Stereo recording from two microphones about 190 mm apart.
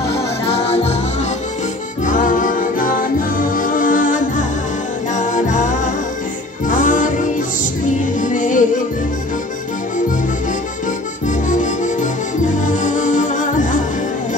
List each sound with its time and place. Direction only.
0.5 s music: 30° left (ahead or behind)
2.0 s music: 45° left (ahead or behind)
11.2 s music: 40° left (ahead or behind)